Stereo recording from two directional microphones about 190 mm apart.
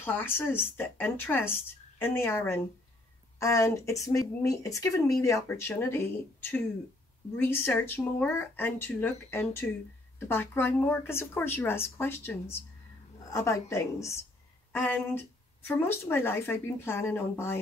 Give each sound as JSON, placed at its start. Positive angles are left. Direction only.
{"t": 0.0, "sound": "speech", "side_deg": 10}